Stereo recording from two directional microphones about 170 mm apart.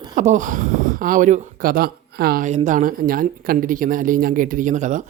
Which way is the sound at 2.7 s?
50° right (ahead or behind).